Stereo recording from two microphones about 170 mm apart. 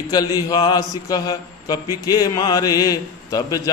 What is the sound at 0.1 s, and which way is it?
A man's voice, 20° left (ahead or behind).